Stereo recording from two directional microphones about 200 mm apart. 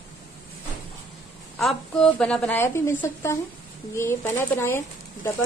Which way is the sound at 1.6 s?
Centre (ahead or behind).